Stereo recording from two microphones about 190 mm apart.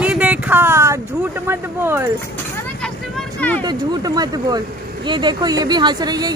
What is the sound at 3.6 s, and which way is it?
Speech, 20° right (ahead or behind).